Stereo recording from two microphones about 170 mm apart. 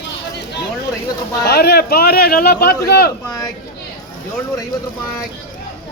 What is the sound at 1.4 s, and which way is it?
Speech, 70° left (ahead or behind).